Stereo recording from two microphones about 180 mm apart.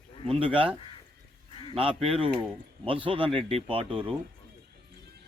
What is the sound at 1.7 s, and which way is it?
Speech, 30° right (ahead or behind).